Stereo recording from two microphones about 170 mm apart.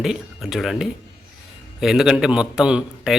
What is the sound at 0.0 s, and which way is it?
A man's voice, centre (ahead or behind).